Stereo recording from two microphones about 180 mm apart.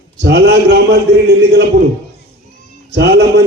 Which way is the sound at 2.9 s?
65° right (ahead or behind).